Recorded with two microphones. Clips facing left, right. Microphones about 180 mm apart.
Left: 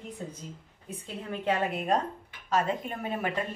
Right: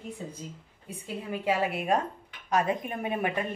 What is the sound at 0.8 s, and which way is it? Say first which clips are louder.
A woman's voice: right 2 dB; 10° right (ahead or behind).